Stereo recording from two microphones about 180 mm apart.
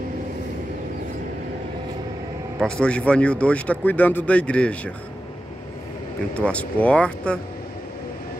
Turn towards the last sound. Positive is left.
turn(degrees=5)  # may be behind; listen again after turning